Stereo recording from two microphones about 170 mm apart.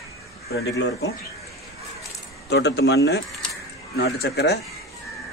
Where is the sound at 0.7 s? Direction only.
90° left.